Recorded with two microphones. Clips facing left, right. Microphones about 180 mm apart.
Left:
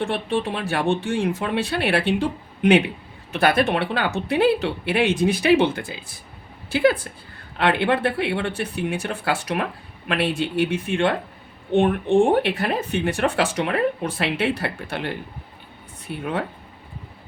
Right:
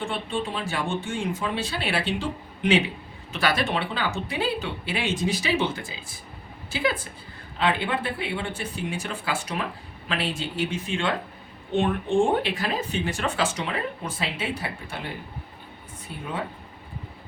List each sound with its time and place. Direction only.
0.0 s speech: 65° left (ahead or behind)